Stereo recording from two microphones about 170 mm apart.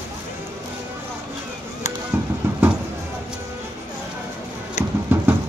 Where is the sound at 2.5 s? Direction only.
15° right (ahead or behind).